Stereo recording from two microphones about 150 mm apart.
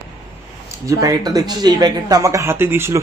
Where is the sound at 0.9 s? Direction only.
25° right (ahead or behind).